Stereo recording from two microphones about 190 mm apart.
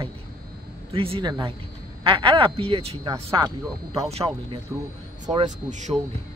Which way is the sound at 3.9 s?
30° right (ahead or behind).